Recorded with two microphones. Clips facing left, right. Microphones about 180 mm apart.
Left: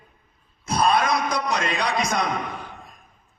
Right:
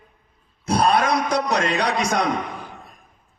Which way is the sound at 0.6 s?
70° right (ahead or behind).